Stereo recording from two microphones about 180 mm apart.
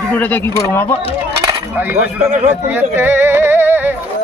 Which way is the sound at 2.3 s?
40° right (ahead or behind).